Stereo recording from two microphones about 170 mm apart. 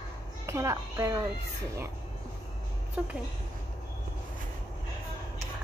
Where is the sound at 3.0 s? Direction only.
5° right (ahead or behind).